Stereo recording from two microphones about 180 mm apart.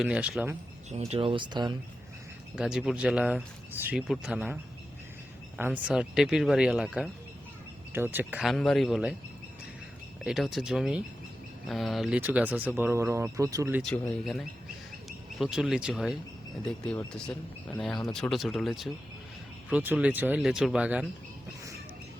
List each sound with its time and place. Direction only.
0.0 s speech: 5° right (ahead or behind)
0.9 s speech: 35° right (ahead or behind)
2.6 s speech: 5° right (ahead or behind)
5.5 s speech: 10° right (ahead or behind)
10.2 s speech: centre (ahead or behind)
15.4 s speech: 5° right (ahead or behind)